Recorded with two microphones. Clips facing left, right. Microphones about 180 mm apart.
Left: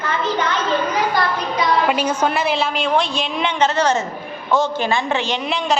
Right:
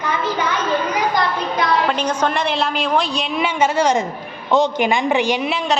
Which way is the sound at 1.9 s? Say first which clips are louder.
Left 1 dB; 5° left (ahead or behind).